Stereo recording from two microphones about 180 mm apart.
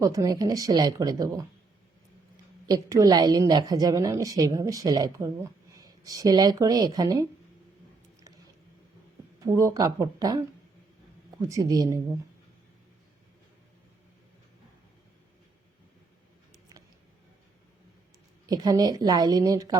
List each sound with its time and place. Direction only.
0.0 s a woman's voice: 20° right (ahead or behind)
2.6 s a woman's voice: 20° right (ahead or behind)
9.4 s a woman's voice: 15° right (ahead or behind)
11.4 s speech: 20° right (ahead or behind)
18.4 s a woman's voice: 20° right (ahead or behind)